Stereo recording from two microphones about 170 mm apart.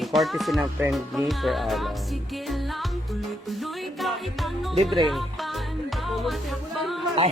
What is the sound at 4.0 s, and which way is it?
Speech, centre (ahead or behind).